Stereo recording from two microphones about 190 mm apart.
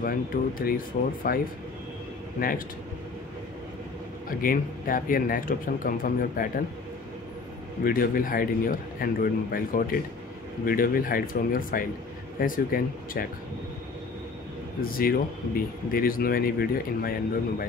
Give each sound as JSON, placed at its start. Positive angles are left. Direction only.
{"t": 0.0, "sound": "speech", "side_deg": 50}
{"t": 4.3, "sound": "speech", "side_deg": 50}
{"t": 7.8, "sound": "speech", "side_deg": 50}
{"t": 14.8, "sound": "speech", "side_deg": 50}